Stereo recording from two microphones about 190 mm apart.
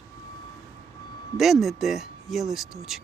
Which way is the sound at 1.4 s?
Centre (ahead or behind).